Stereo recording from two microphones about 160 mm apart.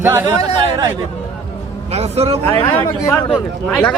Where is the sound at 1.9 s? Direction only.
40° right (ahead or behind).